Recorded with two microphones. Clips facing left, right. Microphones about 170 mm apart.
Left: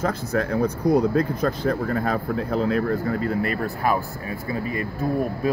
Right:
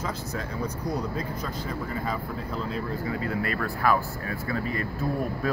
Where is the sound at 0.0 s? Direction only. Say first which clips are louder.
Left 9 dB; 55° left (ahead or behind).